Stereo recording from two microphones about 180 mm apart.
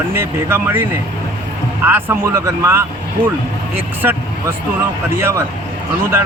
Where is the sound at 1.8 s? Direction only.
15° right (ahead or behind).